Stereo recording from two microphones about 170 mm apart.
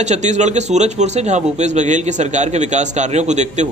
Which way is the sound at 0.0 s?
45° right (ahead or behind).